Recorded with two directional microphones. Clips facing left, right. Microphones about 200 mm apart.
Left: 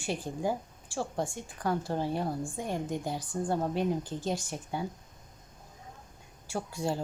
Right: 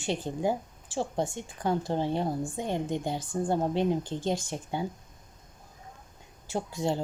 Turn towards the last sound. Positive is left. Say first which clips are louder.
# right 3 dB
turn(degrees=-20)  # may be behind; listen again after turning